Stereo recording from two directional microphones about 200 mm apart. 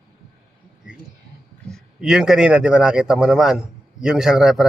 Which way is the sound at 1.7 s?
Centre (ahead or behind).